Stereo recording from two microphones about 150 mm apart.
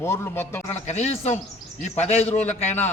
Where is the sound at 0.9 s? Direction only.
50° left (ahead or behind).